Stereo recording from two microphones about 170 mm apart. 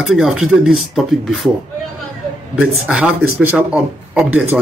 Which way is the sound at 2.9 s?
10° right (ahead or behind).